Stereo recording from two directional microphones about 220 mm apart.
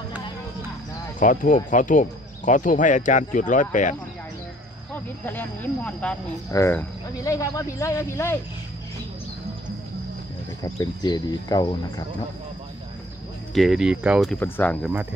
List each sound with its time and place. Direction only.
1.2 s speech: 35° left (ahead or behind)
5.2 s speech: 10° left (ahead or behind)
10.6 s speech: 15° left (ahead or behind)
13.6 s speech: centre (ahead or behind)